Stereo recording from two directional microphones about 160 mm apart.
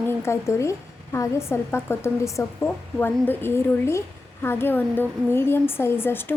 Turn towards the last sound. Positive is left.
turn(degrees=15)  # may be behind; listen again after turning